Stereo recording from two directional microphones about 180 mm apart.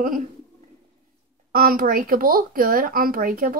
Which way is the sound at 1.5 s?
55° right (ahead or behind).